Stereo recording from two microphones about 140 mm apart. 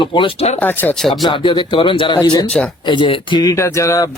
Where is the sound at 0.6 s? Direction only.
15° left (ahead or behind).